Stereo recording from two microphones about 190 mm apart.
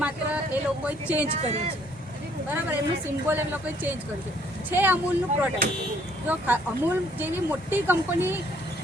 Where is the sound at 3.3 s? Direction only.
10° right (ahead or behind).